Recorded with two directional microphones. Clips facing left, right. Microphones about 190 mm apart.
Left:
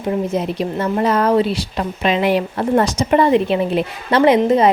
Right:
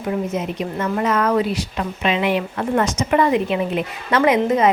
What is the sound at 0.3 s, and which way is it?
A woman's voice, 35° left (ahead or behind).